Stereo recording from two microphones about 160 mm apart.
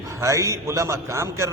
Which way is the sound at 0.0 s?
20° right (ahead or behind).